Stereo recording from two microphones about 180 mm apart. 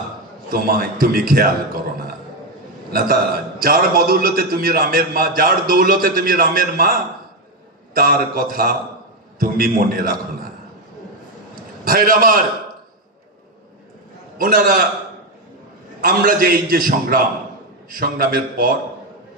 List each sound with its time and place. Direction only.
0.5 s a man's voice: 55° right (ahead or behind)
2.9 s a man's voice: 55° right (ahead or behind)
11.8 s a man's voice: 50° right (ahead or behind)
14.4 s a man's voice: 50° right (ahead or behind)
16.0 s a man's voice: 55° right (ahead or behind)